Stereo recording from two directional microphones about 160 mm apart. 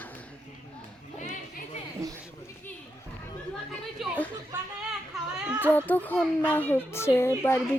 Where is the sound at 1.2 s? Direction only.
50° left (ahead or behind).